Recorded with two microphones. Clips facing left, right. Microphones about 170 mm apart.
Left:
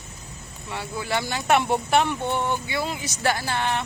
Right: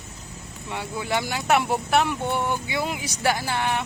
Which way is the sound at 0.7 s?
15° right (ahead or behind).